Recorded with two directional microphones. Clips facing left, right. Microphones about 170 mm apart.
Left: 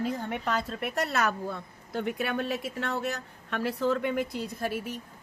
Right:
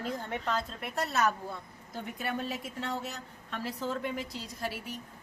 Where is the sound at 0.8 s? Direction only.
75° left (ahead or behind); by 4.8 s 50° left (ahead or behind).